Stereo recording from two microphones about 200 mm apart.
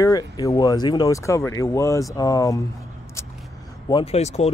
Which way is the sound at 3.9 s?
30° left (ahead or behind).